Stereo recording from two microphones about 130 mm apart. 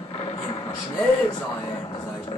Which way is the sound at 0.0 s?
45° left (ahead or behind).